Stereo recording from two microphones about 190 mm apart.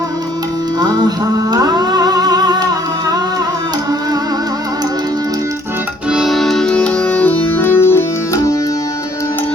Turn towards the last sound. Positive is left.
turn(degrees=10)  # may be behind; listen again after turning